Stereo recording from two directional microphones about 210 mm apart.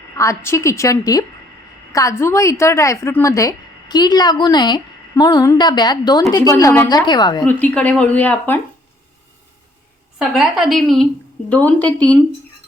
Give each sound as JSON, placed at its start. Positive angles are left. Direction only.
{"t": 0.2, "sound": "a woman's voice", "side_deg": 15}
{"t": 7.4, "sound": "a woman's voice", "side_deg": 5}
{"t": 10.2, "sound": "a woman's voice", "side_deg": 0}